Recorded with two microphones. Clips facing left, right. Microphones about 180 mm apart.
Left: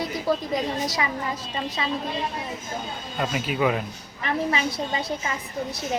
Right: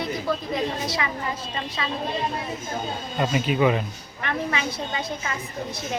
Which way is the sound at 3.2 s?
5° left (ahead or behind).